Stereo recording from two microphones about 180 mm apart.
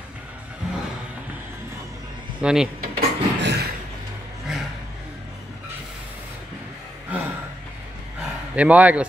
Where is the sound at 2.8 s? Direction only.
60° right (ahead or behind).